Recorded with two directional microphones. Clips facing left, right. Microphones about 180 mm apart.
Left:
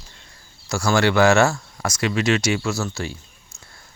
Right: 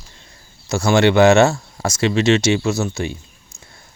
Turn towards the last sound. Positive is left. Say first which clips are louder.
# right 5 dB
turn(degrees=-20)  # may be behind; listen again after turning